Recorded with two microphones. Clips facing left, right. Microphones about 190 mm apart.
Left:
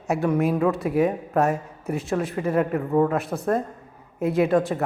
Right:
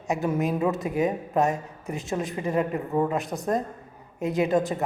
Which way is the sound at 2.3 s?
15° right (ahead or behind).